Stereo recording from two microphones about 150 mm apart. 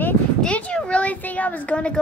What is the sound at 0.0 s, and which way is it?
A child's voice, 10° left (ahead or behind).